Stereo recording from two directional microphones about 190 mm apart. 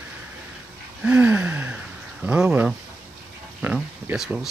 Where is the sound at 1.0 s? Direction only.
5° right (ahead or behind).